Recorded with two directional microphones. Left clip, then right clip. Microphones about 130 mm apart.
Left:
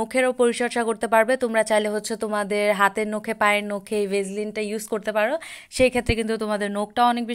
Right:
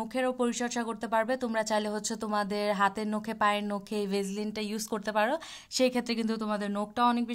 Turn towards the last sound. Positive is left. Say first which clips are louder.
# left 7 dB
turn(degrees=20)  # may be behind; listen again after turning